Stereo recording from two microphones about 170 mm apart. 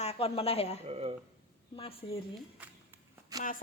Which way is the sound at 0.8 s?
35° right (ahead or behind).